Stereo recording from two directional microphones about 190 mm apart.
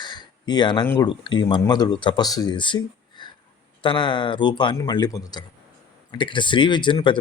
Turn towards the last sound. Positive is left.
turn(degrees=25)  # may be behind; listen again after turning